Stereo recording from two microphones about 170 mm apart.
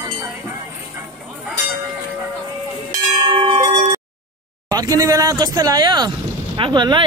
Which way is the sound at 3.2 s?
30° right (ahead or behind).